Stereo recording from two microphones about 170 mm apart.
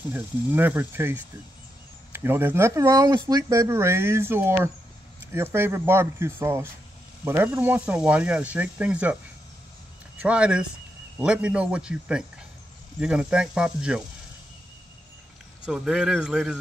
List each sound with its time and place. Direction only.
0.1 s speech: 10° right (ahead or behind)
2.1 s speech: 15° right (ahead or behind)
15.6 s speech: 5° right (ahead or behind)